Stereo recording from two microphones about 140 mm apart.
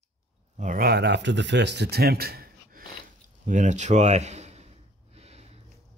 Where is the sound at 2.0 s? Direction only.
90° right.